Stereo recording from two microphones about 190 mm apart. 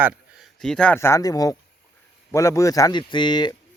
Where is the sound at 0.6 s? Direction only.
5° left (ahead or behind); by 3.5 s 25° left (ahead or behind).